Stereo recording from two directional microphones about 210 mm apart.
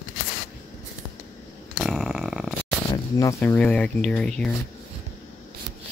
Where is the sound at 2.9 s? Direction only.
15° left (ahead or behind).